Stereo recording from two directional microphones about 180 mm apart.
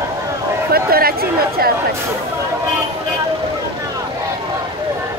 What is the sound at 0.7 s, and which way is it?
Speech, 55° right (ahead or behind).